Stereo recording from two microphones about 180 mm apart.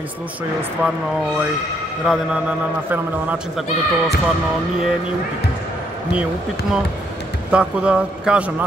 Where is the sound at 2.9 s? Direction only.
5° right (ahead or behind).